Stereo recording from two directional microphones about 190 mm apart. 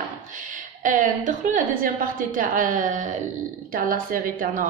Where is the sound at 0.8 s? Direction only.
45° right (ahead or behind).